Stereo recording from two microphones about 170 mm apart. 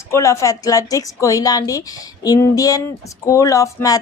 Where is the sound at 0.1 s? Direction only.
15° left (ahead or behind).